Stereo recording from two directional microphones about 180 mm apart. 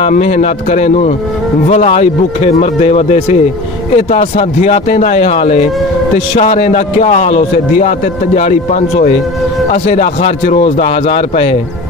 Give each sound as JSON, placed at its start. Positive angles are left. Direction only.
{"t": 0.1, "sound": "a man's voice", "side_deg": 40}